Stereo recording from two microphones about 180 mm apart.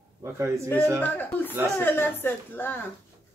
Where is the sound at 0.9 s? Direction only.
10° left (ahead or behind).